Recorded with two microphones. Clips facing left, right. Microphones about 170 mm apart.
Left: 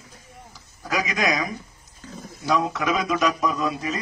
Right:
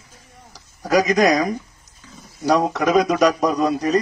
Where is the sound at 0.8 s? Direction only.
40° right (ahead or behind).